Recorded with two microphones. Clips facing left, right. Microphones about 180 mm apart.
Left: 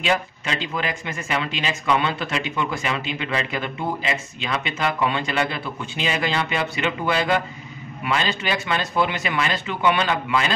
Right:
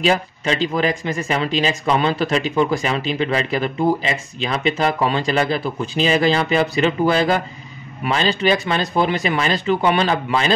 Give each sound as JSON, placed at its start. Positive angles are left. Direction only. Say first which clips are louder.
{"t": 0.0, "sound": "speech", "louder": "right 5 dB", "side_deg": -35}